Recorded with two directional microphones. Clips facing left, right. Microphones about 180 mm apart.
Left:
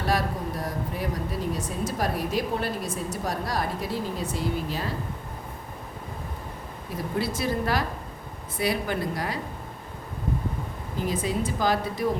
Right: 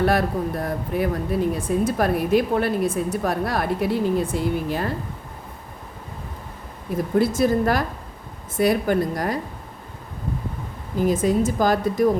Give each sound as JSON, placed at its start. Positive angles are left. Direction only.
{"t": 0.0, "sound": "speech", "side_deg": -55}
{"t": 6.9, "sound": "speech", "side_deg": -50}
{"t": 11.0, "sound": "speech", "side_deg": -50}